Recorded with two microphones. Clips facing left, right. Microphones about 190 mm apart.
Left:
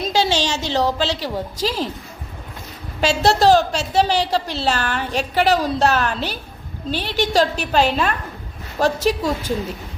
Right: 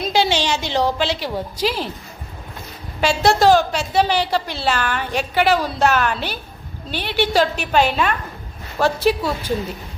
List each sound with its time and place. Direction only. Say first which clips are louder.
0.1 s a sound: right 1 dB; 40° left (ahead or behind)
0.7 s a woman's voice: left 1 dB; 40° left (ahead or behind)
3.0 s a woman's voice: even; 40° left (ahead or behind)